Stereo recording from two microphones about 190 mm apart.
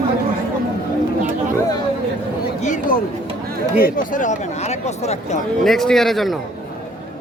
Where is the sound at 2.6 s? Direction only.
40° left (ahead or behind).